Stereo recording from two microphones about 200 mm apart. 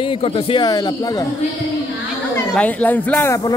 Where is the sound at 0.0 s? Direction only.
25° left (ahead or behind).